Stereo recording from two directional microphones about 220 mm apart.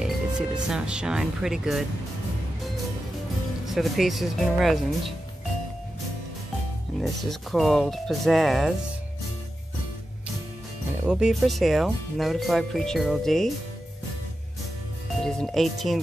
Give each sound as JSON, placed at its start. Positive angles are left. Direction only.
{"t": 0.0, "sound": "speech", "side_deg": -5}
{"t": 3.6, "sound": "speech", "side_deg": 0}
{"t": 7.0, "sound": "speech", "side_deg": 0}
{"t": 11.1, "sound": "speech", "side_deg": -5}
{"t": 15.4, "sound": "speech", "side_deg": 0}